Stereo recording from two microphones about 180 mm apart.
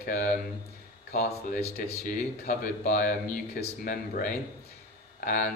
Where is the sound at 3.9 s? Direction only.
50° left (ahead or behind).